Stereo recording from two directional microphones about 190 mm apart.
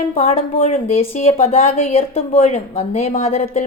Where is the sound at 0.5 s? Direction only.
45° left (ahead or behind).